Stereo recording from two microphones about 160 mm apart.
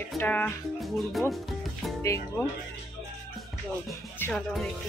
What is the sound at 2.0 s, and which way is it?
Speech, 20° left (ahead or behind).